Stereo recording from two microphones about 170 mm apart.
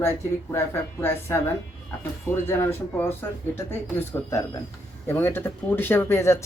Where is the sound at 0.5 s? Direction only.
15° left (ahead or behind).